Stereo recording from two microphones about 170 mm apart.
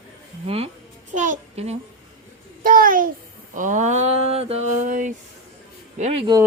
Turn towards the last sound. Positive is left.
turn(degrees=-40)  # may be behind; listen again after turning